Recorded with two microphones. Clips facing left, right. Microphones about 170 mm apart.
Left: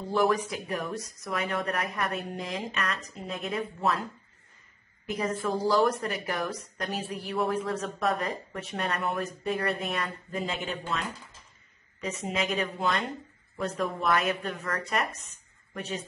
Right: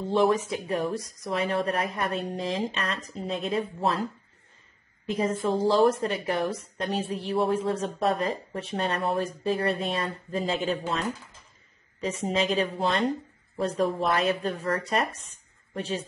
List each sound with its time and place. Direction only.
0.0 s a woman's voice: 25° right (ahead or behind)
5.0 s a woman's voice: 30° right (ahead or behind)